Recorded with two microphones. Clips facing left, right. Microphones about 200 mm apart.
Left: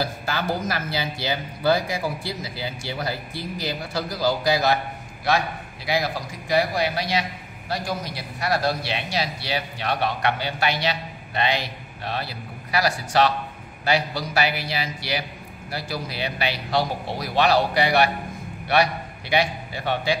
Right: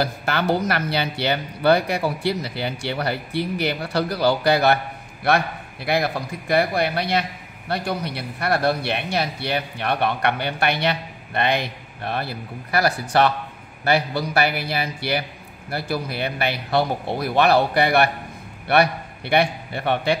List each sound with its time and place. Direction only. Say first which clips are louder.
0.0 s a man's voice: right 4 dB; 65° right (ahead or behind)